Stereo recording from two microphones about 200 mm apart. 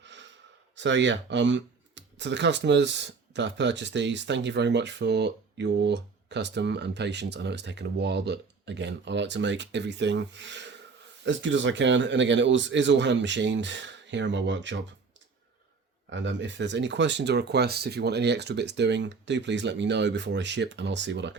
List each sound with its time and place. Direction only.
0.0 s a sound: 65° right (ahead or behind)
0.8 s speech: 65° right (ahead or behind)
16.0 s speech: 65° right (ahead or behind)